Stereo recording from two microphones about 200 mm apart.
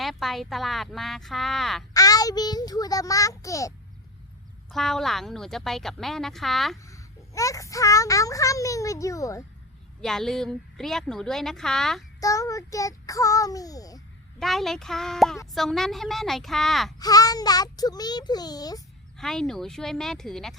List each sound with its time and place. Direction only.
0.0 s a woman's voice: centre (ahead or behind)
1.9 s a child's voice: 20° left (ahead or behind)
4.7 s a woman's voice: centre (ahead or behind)
6.8 s a child's voice: 15° left (ahead or behind)
10.0 s a woman's voice: centre (ahead or behind)
12.2 s a child's voice: 15° left (ahead or behind)
14.3 s a woman's voice: centre (ahead or behind)
17.0 s a child's voice: 20° left (ahead or behind)
19.1 s a woman's voice: centre (ahead or behind)